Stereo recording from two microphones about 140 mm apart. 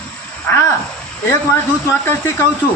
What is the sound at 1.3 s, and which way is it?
A man's voice, 15° left (ahead or behind).